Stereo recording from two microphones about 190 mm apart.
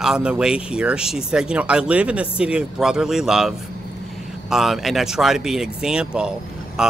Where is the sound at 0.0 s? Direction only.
5° right (ahead or behind).